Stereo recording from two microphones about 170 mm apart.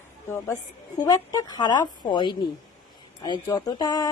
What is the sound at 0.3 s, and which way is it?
A woman's voice, 15° left (ahead or behind).